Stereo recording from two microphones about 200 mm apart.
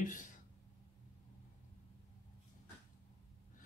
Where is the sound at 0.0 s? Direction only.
40° left (ahead or behind).